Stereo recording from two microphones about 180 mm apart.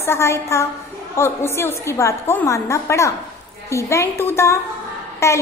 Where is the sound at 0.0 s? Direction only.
15° left (ahead or behind).